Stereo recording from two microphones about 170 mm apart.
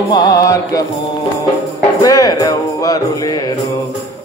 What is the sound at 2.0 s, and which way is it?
Music, 20° left (ahead or behind).